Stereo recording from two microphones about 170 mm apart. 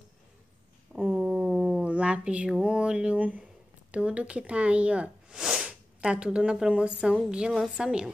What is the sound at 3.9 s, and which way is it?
Speech, 5° right (ahead or behind).